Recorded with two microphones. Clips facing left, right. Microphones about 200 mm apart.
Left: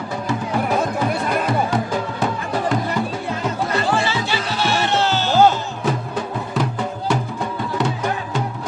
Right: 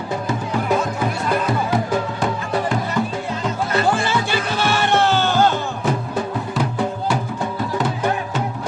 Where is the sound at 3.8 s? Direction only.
50° right (ahead or behind).